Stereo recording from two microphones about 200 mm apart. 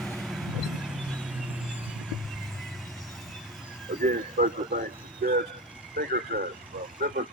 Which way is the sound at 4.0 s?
40° right (ahead or behind).